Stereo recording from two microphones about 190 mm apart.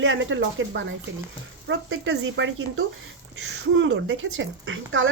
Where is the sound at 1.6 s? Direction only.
75° right (ahead or behind).